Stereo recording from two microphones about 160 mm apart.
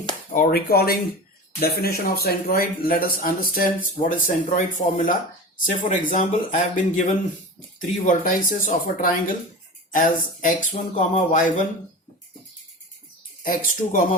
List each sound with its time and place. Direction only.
0.3 s speech: 65° left (ahead or behind)
5.6 s speech: 55° left (ahead or behind)
13.4 s speech: 60° left (ahead or behind)